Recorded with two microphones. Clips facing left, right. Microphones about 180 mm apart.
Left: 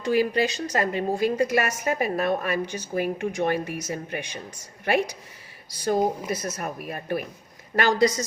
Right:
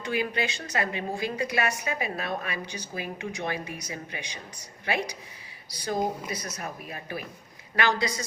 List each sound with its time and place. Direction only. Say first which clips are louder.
0.0 s speech: left 7 dB; 40° left (ahead or behind)